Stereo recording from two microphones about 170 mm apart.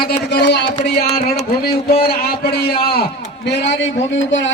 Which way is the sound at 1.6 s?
65° left (ahead or behind).